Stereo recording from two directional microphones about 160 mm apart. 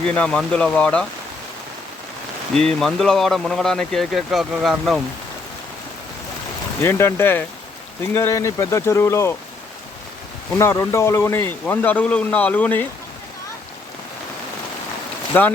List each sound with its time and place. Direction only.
0.1 s speech: 5° left (ahead or behind)
2.6 s speech: centre (ahead or behind)
6.8 s speech: 15° left (ahead or behind)
10.6 s speech: 15° left (ahead or behind)
15.3 s speech: 10° left (ahead or behind)